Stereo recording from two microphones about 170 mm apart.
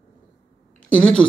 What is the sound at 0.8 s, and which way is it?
Speech, 5° left (ahead or behind).